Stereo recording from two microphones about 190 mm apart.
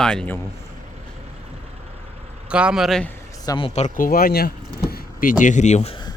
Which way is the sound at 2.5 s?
5° right (ahead or behind).